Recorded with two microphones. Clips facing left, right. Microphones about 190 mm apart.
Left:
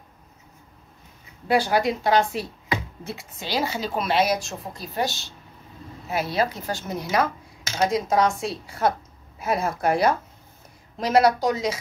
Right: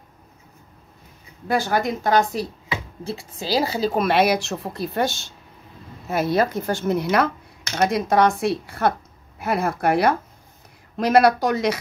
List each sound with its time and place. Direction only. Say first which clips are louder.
1.5 s a woman's voice: left 1 dB; 45° right (ahead or behind)
3.1 s a woman's voice: right 6 dB; 30° right (ahead or behind)
4.0 s a woman's voice: right 2 dB; 60° right (ahead or behind)